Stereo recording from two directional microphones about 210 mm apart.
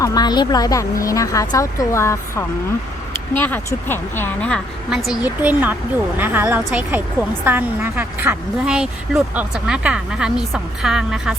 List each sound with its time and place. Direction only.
0.0 s a woman's voice: 20° left (ahead or behind); by 11.3 s 5° right (ahead or behind)